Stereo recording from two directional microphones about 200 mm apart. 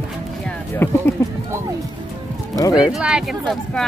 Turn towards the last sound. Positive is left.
turn(degrees=0)  # may be behind; listen again after turning